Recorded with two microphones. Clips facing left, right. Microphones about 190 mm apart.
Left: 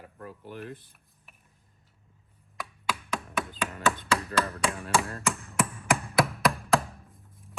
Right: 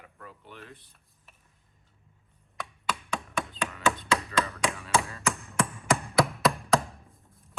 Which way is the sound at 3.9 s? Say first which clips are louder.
Even; centre (ahead or behind).